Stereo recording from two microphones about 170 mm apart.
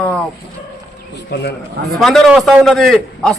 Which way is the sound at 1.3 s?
80° left.